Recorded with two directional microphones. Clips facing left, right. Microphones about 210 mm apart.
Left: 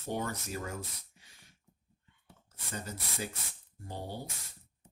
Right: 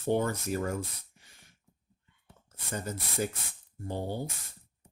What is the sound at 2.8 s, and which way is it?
Speech, 50° right (ahead or behind).